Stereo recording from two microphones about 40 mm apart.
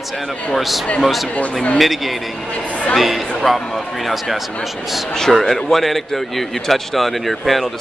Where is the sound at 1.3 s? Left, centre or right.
Left.